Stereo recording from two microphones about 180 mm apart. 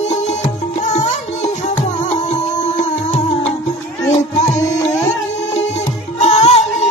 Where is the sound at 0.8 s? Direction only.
40° left (ahead or behind).